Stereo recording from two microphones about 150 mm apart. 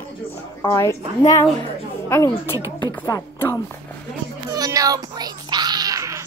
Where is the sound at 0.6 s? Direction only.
20° left (ahead or behind).